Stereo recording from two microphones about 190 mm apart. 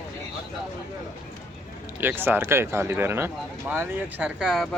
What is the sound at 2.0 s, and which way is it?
Speech, 10° right (ahead or behind).